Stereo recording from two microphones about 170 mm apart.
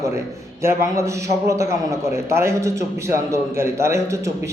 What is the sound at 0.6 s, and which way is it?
A man's voice, 15° right (ahead or behind).